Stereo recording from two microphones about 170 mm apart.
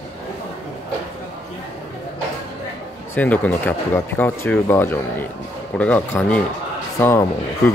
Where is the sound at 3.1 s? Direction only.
10° left (ahead or behind).